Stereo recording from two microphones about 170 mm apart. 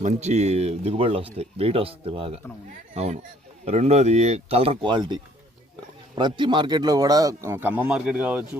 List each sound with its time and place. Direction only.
0.0 s a man's voice: 40° right (ahead or behind); by 8.4 s 10° right (ahead or behind)